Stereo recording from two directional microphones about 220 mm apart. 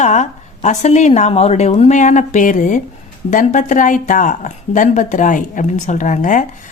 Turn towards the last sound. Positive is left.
turn(degrees=35)  # may be behind; listen again after turning